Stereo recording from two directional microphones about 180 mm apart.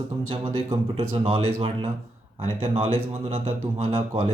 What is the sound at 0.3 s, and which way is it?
Speech, 30° right (ahead or behind).